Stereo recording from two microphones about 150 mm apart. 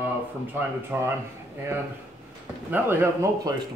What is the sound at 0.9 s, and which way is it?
Speech, 10° right (ahead or behind).